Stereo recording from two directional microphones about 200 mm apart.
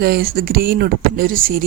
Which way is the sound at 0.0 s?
50° right (ahead or behind).